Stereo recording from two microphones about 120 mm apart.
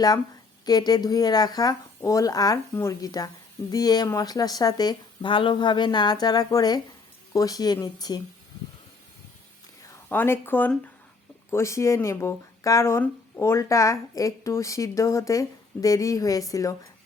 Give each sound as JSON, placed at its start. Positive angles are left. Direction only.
{"t": 0.6, "sound": "speech", "side_deg": 35}
{"t": 9.8, "sound": "speech", "side_deg": 20}